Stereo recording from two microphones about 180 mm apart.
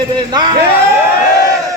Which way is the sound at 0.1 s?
25° right (ahead or behind).